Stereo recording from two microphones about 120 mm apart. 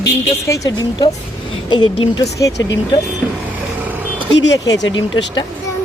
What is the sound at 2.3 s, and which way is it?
Speech, 30° left (ahead or behind).